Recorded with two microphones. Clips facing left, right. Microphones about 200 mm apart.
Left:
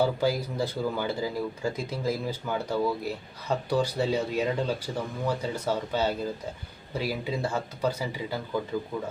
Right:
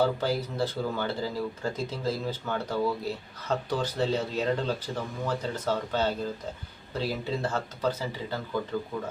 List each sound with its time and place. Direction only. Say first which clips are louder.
0.0 s speech: left 1 dB; 10° left (ahead or behind)